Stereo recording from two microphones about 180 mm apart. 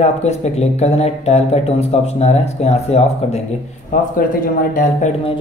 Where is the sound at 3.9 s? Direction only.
50° left (ahead or behind).